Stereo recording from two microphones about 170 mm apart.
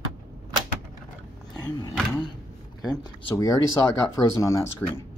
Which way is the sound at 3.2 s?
20° left (ahead or behind).